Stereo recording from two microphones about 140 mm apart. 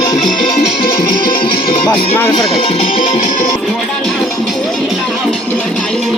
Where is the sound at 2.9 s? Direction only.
65° left (ahead or behind).